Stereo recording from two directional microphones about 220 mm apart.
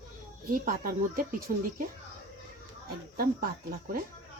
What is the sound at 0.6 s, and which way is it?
Speech, 40° right (ahead or behind).